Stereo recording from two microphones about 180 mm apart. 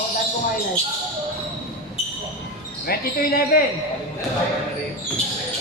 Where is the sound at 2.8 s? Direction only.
55° left (ahead or behind).